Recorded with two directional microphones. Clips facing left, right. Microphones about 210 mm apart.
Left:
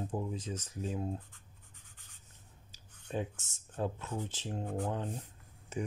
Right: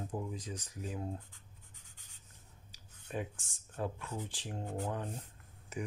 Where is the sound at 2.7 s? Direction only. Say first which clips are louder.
Left 3 dB; 25° left (ahead or behind).